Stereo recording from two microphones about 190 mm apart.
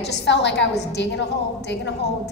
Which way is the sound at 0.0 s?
65° left (ahead or behind).